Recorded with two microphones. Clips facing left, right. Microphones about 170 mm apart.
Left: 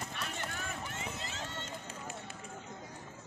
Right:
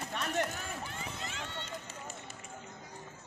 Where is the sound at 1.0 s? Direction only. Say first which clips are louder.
Even; 30° left (ahead or behind).